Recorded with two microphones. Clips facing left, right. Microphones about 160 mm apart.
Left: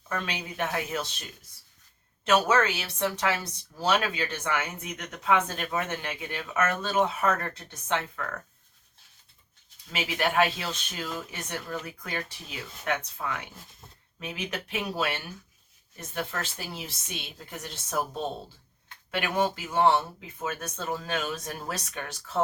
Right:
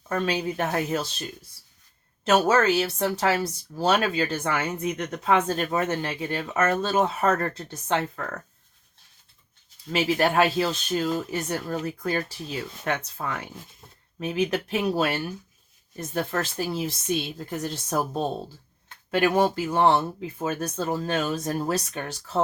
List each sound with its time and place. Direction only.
0.1 s speech: 35° right (ahead or behind)
2.2 s speech: 35° right (ahead or behind)
9.9 s speech: 40° right (ahead or behind)